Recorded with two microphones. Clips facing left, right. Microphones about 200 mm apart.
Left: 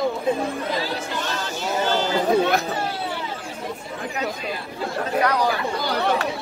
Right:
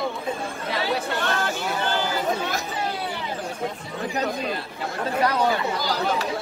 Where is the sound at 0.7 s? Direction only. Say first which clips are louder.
Right 1 dB; 65° right (ahead or behind).